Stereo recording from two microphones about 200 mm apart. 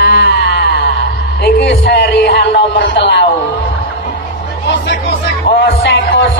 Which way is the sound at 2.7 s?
60° left (ahead or behind).